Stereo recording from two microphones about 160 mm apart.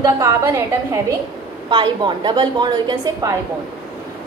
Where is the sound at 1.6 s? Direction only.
30° right (ahead or behind).